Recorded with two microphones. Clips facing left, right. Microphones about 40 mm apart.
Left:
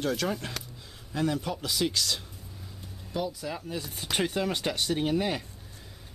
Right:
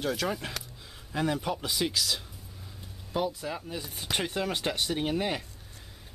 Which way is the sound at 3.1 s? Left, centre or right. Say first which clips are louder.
Right 2 dB; right.